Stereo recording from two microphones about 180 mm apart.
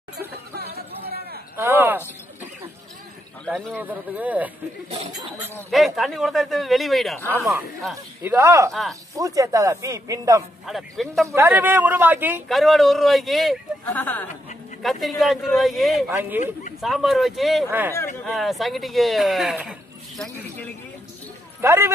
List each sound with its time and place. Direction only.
0.6 s a sound: 60° right (ahead or behind)
1.6 s a sound: 10° right (ahead or behind)
3.4 s a man's voice: centre (ahead or behind)
3.7 s speech: 10° right (ahead or behind)
5.7 s a man's voice: centre (ahead or behind)
8.2 s speech: 15° right (ahead or behind)
10.7 s a man's voice: centre (ahead or behind)
11.3 s speech: 10° right (ahead or behind)
12.4 s a man's voice: centre (ahead or behind)
16.1 s speech: 15° right (ahead or behind)
16.8 s a man's voice: centre (ahead or behind)
17.6 s speech: 15° right (ahead or behind)
18.2 s a man's voice: centre (ahead or behind)
21.5 s speech: 15° right (ahead or behind)